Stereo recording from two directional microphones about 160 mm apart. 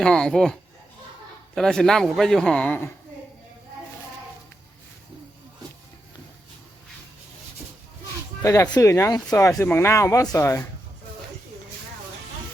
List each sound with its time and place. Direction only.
0.0 s a man's voice: 5° left (ahead or behind)
8.4 s speech: 15° left (ahead or behind)